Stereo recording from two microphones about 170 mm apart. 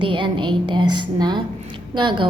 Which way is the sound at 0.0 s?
30° right (ahead or behind).